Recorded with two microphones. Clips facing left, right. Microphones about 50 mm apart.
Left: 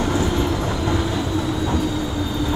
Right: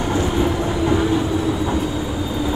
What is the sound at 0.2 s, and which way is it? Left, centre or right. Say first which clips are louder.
Train: right 2 dB; centre.